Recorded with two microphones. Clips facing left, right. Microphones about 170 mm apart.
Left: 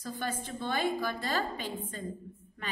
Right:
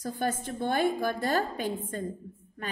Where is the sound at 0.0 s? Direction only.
50° right (ahead or behind).